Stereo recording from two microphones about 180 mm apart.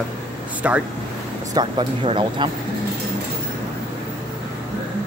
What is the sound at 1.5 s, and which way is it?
Speech, 25° right (ahead or behind).